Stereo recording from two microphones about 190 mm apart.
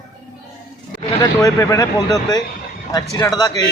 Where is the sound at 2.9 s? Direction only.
20° left (ahead or behind).